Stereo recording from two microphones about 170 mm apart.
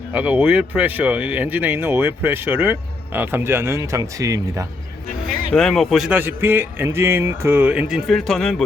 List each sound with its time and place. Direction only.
0.1 s speech: 10° right (ahead or behind)
5.5 s speech: centre (ahead or behind)